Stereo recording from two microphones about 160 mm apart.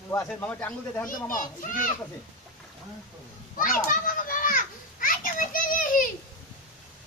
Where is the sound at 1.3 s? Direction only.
60° left (ahead or behind).